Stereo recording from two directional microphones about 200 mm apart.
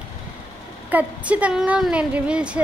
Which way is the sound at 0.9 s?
5° right (ahead or behind).